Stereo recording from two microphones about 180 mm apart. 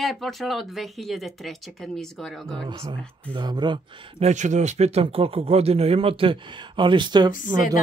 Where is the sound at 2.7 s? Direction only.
30° right (ahead or behind).